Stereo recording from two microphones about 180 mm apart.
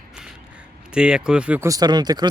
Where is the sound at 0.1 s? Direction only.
5° right (ahead or behind).